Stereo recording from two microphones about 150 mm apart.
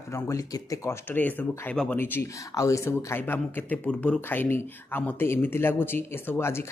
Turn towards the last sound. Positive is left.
turn(degrees=15)  # may be behind; listen again after turning